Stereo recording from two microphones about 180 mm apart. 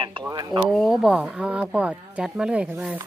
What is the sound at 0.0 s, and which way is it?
Speech, 25° right (ahead or behind).